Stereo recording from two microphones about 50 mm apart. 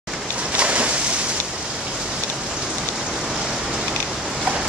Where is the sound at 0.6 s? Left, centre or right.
Right.